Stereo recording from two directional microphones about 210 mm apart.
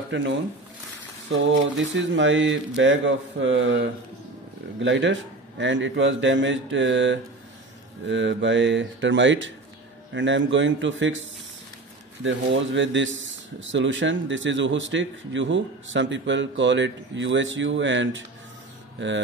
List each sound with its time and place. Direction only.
0.1 s speech: 60° right (ahead or behind)
12.2 s speech: 60° right (ahead or behind)